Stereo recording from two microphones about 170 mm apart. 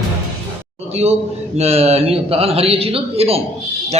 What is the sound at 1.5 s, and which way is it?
A man's voice, 35° right (ahead or behind).